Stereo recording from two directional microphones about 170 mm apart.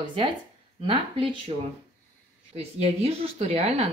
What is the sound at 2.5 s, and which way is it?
Speech, 35° right (ahead or behind).